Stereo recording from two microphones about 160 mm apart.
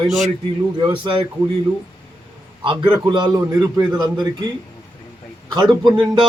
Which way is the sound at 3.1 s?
25° right (ahead or behind).